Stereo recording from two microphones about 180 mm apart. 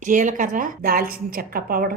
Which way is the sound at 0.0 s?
45° right (ahead or behind).